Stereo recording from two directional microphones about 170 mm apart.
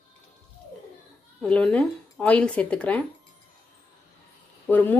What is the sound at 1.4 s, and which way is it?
Speech, 5° left (ahead or behind).